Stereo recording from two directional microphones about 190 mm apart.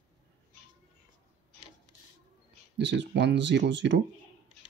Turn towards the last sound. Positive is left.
turn(degrees=-70)  # may be behind; listen again after turning